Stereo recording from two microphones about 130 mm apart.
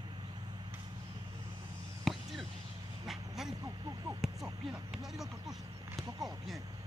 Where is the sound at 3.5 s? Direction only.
30° right (ahead or behind).